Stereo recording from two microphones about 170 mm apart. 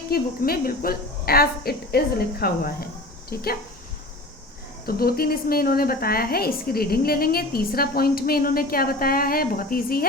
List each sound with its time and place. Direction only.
0.1 s a woman's voice: 65° left (ahead or behind)
4.9 s a woman's voice: 60° left (ahead or behind)